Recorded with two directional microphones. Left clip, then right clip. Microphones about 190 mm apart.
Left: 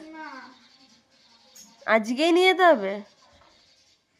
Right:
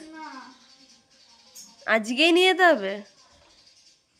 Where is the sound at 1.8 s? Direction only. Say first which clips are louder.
Right 1 dB; 5° left (ahead or behind).